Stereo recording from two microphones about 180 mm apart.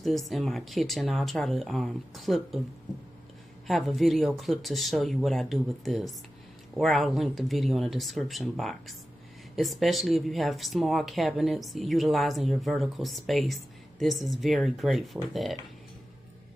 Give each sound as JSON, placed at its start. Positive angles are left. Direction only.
{"t": 0.3, "sound": "speech", "side_deg": 0}
{"t": 3.6, "sound": "speech", "side_deg": 0}